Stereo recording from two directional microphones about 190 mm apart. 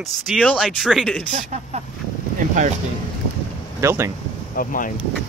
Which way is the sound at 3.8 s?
15° right (ahead or behind).